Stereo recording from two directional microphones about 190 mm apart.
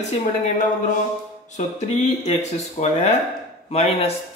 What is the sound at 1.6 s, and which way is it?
A man's voice, 35° left (ahead or behind).